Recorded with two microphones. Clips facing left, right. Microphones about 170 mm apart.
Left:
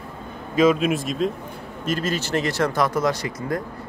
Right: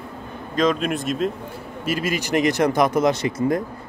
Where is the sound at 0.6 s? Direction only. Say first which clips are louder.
Left 3 dB; 5° left (ahead or behind).